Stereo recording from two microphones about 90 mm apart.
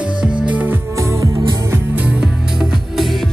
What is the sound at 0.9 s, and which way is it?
Music, 35° right (ahead or behind).